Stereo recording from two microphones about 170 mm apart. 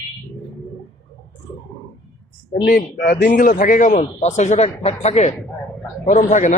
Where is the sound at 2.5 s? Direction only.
65° left (ahead or behind).